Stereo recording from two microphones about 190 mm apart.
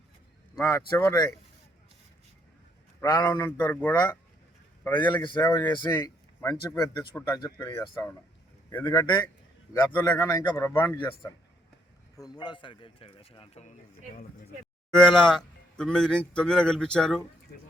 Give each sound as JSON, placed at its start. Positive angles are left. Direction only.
{"t": 0.6, "sound": "a man's voice", "side_deg": 15}
{"t": 3.0, "sound": "a man's voice", "side_deg": 20}
{"t": 4.9, "sound": "speech", "side_deg": 25}
{"t": 5.5, "sound": "a man's voice", "side_deg": 10}
{"t": 5.7, "sound": "speech", "side_deg": 25}
{"t": 9.9, "sound": "a man's voice", "side_deg": 15}
{"t": 14.9, "sound": "a man's voice", "side_deg": 5}